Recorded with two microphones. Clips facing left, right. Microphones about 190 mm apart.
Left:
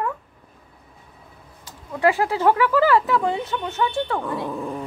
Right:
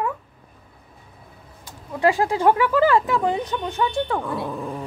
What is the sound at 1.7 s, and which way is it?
Speech, 15° right (ahead or behind).